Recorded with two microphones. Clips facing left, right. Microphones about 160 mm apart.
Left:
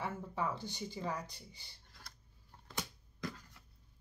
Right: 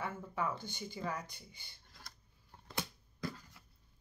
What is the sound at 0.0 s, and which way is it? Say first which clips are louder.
Speech: even; 30° left (ahead or behind).